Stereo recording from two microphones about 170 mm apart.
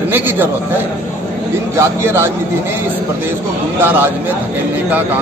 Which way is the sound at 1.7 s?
15° right (ahead or behind).